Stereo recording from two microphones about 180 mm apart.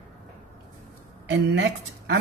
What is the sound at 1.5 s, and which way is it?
Speech, 75° right (ahead or behind).